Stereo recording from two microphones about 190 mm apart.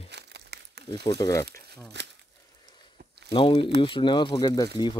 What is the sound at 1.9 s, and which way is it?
Speech, 65° right (ahead or behind).